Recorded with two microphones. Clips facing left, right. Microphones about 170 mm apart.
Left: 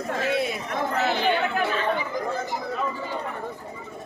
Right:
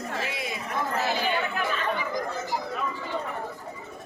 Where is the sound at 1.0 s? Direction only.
65° left (ahead or behind).